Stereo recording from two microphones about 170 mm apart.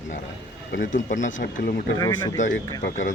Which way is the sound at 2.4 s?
45° left (ahead or behind).